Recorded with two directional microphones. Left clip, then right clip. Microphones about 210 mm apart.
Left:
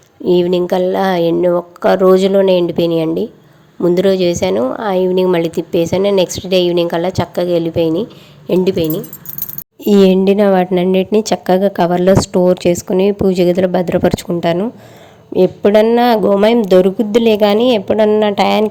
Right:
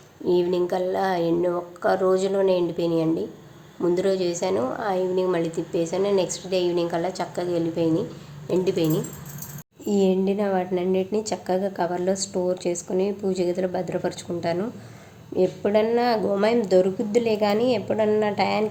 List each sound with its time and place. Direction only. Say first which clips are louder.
0.3 s a woman's voice: left 9 dB; 35° left (ahead or behind)
9.8 s a woman's voice: left 12 dB; 45° left (ahead or behind)